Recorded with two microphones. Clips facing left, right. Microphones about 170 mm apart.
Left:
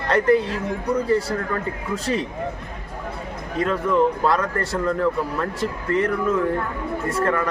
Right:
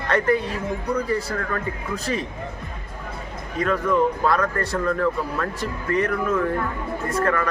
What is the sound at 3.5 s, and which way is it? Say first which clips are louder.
Speech: left 1 dB; 25° left (ahead or behind).